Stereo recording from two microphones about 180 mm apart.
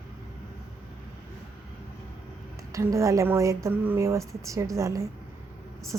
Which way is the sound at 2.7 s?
15° right (ahead or behind).